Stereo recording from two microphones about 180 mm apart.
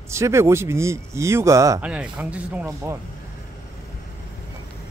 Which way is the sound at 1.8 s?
5° right (ahead or behind).